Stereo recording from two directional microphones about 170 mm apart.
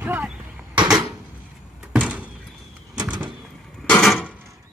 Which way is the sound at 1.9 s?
5° right (ahead or behind).